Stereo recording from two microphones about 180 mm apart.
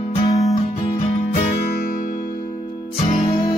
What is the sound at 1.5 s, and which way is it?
Music, 55° left (ahead or behind).